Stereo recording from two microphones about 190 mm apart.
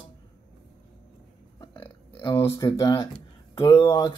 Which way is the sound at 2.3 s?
15° left (ahead or behind).